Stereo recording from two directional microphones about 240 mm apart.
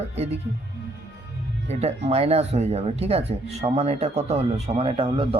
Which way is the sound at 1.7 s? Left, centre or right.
Right.